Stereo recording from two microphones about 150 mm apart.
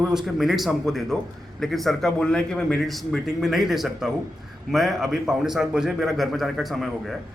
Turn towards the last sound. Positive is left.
turn(degrees=0)  # may be behind; listen again after turning